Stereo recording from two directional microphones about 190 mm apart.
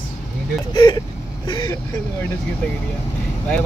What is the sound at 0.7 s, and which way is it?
Speech, 25° left (ahead or behind).